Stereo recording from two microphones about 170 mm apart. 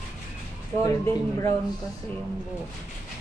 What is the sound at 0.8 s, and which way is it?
Speech, 15° left (ahead or behind).